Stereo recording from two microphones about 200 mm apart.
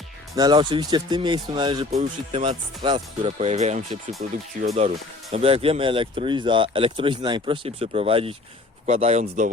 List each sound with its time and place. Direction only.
0.3 s speech: 20° right (ahead or behind)